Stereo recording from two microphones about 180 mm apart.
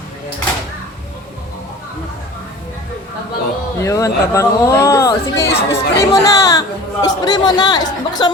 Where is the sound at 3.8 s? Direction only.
20° left (ahead or behind).